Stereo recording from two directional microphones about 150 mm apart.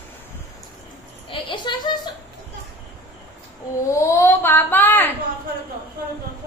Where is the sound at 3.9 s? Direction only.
20° left (ahead or behind).